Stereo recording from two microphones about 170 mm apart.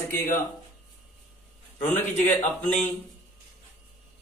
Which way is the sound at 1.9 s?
10° left (ahead or behind).